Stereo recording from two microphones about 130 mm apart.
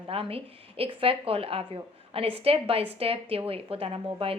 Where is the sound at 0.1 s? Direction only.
45° right (ahead or behind).